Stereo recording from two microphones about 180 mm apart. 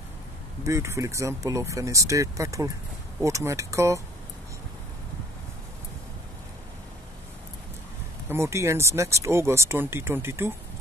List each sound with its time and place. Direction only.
0.7 s speech: 15° right (ahead or behind)
8.3 s speech: 15° right (ahead or behind)